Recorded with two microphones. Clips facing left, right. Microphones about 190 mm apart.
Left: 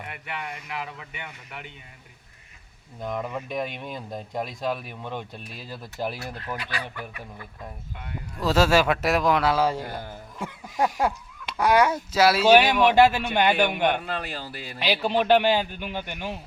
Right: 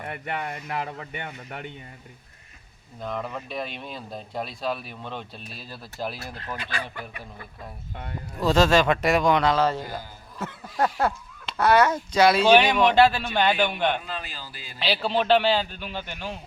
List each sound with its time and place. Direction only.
0.0 s speech: 45° right (ahead or behind)
3.0 s speech: 15° left (ahead or behind)
8.4 s a man's voice: 5° left (ahead or behind)
9.8 s speech: 60° left (ahead or behind)
10.3 s speech: 10° left (ahead or behind)
14.0 s speech: 65° left (ahead or behind)
15.0 s speech: 15° left (ahead or behind)